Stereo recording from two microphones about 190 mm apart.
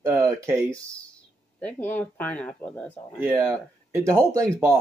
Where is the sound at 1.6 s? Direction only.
10° left (ahead or behind).